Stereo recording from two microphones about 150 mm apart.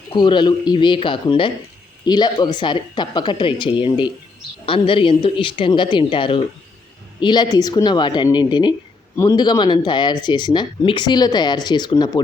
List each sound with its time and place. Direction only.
0.1 s speech: 30° left (ahead or behind)